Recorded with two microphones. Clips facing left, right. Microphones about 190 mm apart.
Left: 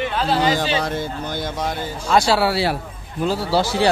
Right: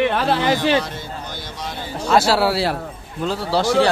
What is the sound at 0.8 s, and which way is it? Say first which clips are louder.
Speech: left 6 dB; 50° left (ahead or behind).